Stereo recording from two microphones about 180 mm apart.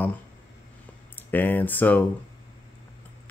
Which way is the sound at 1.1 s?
10° left (ahead or behind).